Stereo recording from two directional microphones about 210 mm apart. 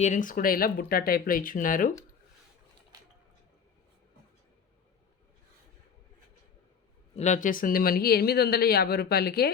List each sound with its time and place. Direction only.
0.0 s speech: 35° left (ahead or behind)
7.2 s speech: 35° left (ahead or behind)